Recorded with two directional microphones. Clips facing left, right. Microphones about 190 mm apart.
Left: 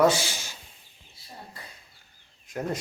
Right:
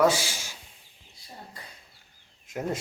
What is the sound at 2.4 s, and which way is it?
Speech, 25° right (ahead or behind).